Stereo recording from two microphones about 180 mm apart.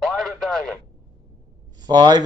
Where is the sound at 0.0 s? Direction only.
Centre (ahead or behind).